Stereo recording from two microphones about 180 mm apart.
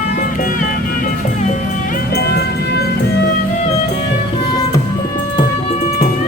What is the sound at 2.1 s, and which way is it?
Music, 65° left (ahead or behind).